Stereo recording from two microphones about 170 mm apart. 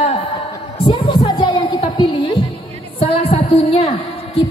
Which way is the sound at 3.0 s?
35° left (ahead or behind).